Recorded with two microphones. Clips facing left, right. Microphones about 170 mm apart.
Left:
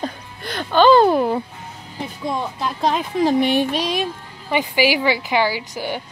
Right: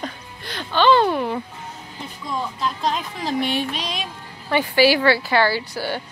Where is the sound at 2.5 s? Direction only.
55° left (ahead or behind).